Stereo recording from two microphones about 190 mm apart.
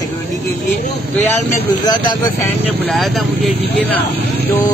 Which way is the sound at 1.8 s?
20° left (ahead or behind).